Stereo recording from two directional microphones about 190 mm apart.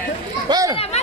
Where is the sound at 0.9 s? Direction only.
35° left (ahead or behind).